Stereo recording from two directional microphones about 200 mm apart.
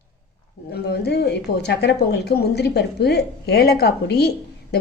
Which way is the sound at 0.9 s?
55° left (ahead or behind).